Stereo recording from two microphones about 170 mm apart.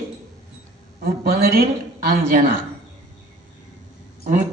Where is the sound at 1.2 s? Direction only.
60° right (ahead or behind).